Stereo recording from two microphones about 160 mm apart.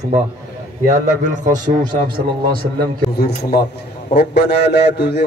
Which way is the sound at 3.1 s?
80° left.